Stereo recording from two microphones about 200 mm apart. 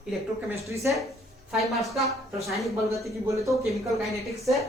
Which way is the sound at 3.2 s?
15° right (ahead or behind).